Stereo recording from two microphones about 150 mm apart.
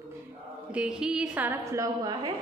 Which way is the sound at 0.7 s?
5° right (ahead or behind).